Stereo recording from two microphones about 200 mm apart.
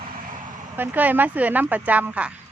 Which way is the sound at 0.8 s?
10° right (ahead or behind).